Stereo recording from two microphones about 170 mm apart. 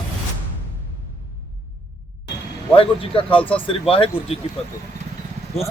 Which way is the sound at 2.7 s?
30° left (ahead or behind).